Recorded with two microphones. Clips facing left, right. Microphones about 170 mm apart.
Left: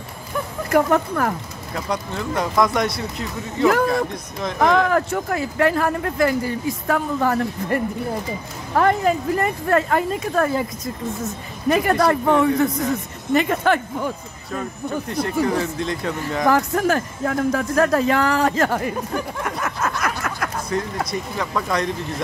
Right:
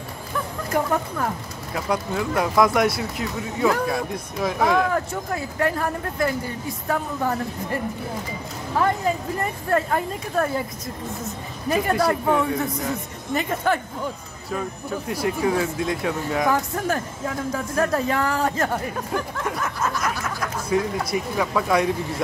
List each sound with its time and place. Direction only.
0.7 s speech: 75° left (ahead or behind)
1.7 s speech: 5° right (ahead or behind)
4.6 s speech: 80° left
8.7 s speech: 70° left (ahead or behind); by 10.5 s 90° left
11.7 s speech: 75° left (ahead or behind)
15.0 s speech: 5° right (ahead or behind)
16.4 s speech: 80° left
19.6 s a sound: 70° left (ahead or behind)
20.7 s speech: 5° right (ahead or behind)